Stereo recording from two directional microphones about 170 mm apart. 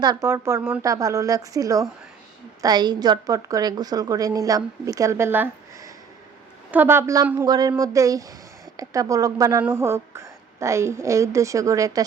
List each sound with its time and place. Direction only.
0.0 s a woman's voice: 20° right (ahead or behind)